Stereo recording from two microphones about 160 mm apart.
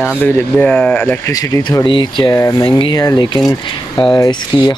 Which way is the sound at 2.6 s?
30° left (ahead or behind).